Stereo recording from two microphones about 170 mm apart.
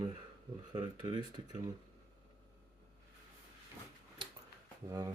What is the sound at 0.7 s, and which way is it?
Speech, 30° right (ahead or behind).